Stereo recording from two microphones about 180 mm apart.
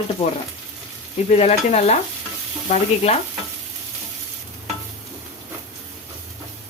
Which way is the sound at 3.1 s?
35° left (ahead or behind).